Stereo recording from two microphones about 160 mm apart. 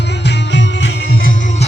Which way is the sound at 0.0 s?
90° left.